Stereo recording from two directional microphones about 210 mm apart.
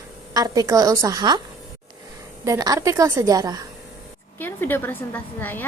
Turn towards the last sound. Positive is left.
turn(degrees=10)  # may be behind; listen again after turning